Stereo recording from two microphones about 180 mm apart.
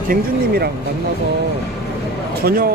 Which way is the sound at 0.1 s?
60° right (ahead or behind).